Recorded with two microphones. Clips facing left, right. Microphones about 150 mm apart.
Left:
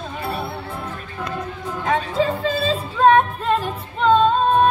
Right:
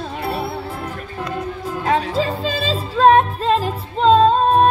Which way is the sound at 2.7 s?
30° right (ahead or behind).